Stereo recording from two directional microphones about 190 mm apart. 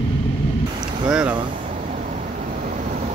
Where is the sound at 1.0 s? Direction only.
5° right (ahead or behind).